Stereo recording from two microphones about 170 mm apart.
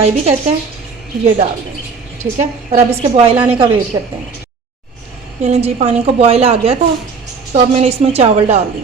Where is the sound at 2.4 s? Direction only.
40° right (ahead or behind).